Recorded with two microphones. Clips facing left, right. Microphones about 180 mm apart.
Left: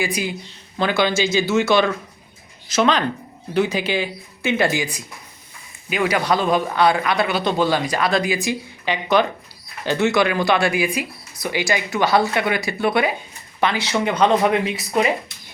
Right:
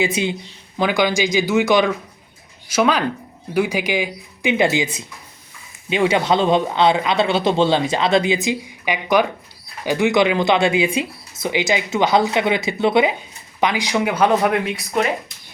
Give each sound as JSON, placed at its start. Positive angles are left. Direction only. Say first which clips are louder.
{"t": 0.0, "sound": "speech", "louder": "right 4 dB", "side_deg": -25}
{"t": 0.8, "sound": "speech", "louder": "right 1 dB", "side_deg": -10}